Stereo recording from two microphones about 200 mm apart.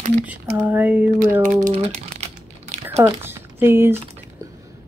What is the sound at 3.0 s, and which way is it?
Speech, 10° right (ahead or behind).